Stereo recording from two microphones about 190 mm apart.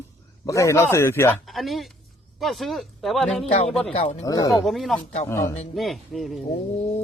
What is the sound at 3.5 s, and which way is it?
Speech, 35° left (ahead or behind).